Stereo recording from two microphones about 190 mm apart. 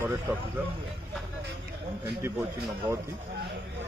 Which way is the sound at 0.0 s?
10° right (ahead or behind).